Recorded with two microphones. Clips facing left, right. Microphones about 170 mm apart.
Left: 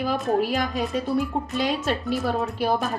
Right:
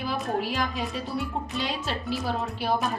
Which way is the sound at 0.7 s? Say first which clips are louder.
Left 7 dB; centre (ahead or behind).